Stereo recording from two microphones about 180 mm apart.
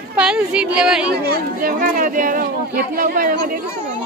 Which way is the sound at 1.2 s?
50° right (ahead or behind).